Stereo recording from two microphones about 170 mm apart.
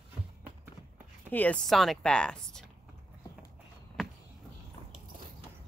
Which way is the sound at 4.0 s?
Centre (ahead or behind).